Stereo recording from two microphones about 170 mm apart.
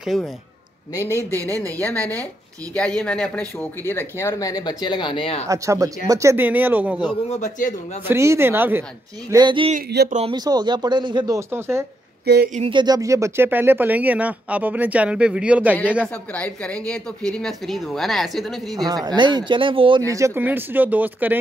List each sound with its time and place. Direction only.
0.0 s a man's voice: centre (ahead or behind)
1.1 s speech: 10° left (ahead or behind); by 5.4 s 30° left (ahead or behind)
5.5 s speech: 20° right (ahead or behind)
7.2 s speech: 45° left (ahead or behind)
8.1 s speech: 15° right (ahead or behind)
9.3 s speech: 25° right (ahead or behind)
10.0 s speech: 45° right (ahead or behind)
10.3 s speech: 25° right (ahead or behind)
12.5 s speech: 30° right (ahead or behind); by 15.7 s 5° right (ahead or behind)
16.3 s speech: 5° left (ahead or behind)
18.9 s speech: 25° right (ahead or behind)
20.1 s speech: 20° right (ahead or behind)